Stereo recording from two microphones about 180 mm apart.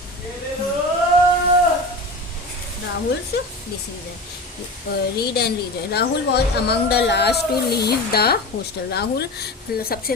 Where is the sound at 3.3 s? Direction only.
65° left (ahead or behind).